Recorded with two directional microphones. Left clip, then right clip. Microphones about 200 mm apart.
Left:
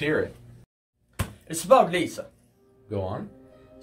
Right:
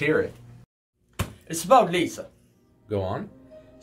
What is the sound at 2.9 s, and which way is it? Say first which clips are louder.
Speech: right 3 dB; 30° right (ahead or behind).